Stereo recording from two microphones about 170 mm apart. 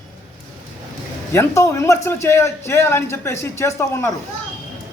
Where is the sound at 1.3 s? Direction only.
15° left (ahead or behind).